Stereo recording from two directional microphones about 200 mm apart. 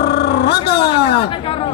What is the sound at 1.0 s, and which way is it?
Chatter, 55° left (ahead or behind).